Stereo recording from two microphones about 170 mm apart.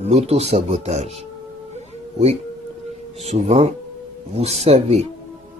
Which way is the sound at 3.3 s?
40° right (ahead or behind).